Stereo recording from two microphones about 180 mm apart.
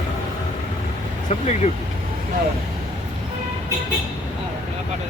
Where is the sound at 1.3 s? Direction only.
35° left (ahead or behind).